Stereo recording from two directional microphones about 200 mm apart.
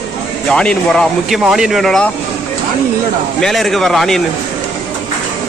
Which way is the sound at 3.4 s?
Centre (ahead or behind).